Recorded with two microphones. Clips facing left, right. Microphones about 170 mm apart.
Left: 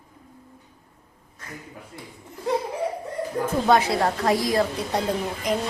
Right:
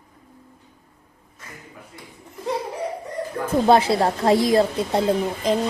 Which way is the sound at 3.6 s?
30° right (ahead or behind).